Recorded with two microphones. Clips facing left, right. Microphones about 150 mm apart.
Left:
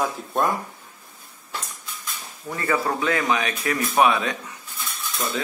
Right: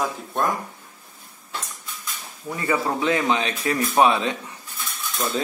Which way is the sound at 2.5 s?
15° right (ahead or behind).